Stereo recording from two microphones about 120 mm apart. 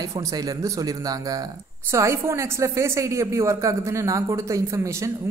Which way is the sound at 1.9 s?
25° right (ahead or behind).